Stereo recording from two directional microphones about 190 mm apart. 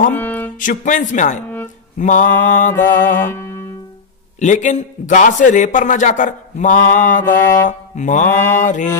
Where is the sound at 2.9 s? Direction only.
45° left (ahead or behind).